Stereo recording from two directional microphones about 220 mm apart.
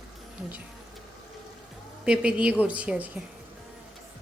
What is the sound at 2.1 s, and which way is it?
A woman's voice, 5° right (ahead or behind).